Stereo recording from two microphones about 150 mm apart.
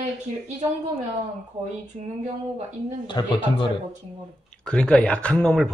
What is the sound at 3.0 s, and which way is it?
Speech, 30° left (ahead or behind).